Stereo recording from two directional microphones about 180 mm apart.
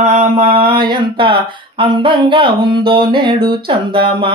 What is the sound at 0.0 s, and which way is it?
Mantra, 35° right (ahead or behind).